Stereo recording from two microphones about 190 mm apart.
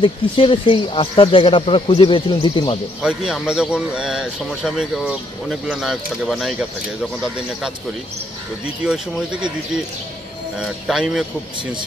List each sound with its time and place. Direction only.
0.0 s speech: 25° left (ahead or behind)
3.0 s speech: 5° right (ahead or behind)
10.6 s speech: centre (ahead or behind)